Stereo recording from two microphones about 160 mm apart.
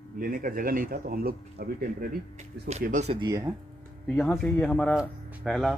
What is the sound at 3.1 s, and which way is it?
Speech, 25° right (ahead or behind).